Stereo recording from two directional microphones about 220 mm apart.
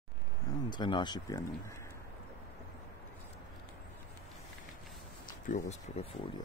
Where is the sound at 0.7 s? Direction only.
20° left (ahead or behind).